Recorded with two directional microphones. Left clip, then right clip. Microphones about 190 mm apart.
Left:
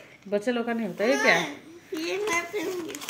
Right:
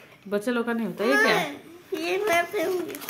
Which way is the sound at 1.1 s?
40° right (ahead or behind).